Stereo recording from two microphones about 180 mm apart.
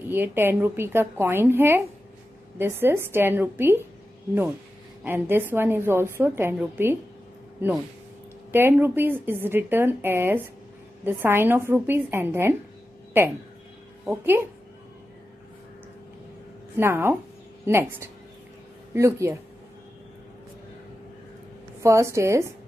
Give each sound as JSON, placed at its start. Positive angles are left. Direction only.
{"t": 0.1, "sound": "a woman's voice", "side_deg": -10}
{"t": 5.0, "sound": "a woman's voice", "side_deg": -10}
{"t": 8.5, "sound": "a woman's voice", "side_deg": -10}
{"t": 14.0, "sound": "a woman's voice", "side_deg": -10}
{"t": 16.7, "sound": "a woman's voice", "side_deg": -15}
{"t": 21.8, "sound": "a woman's voice", "side_deg": -15}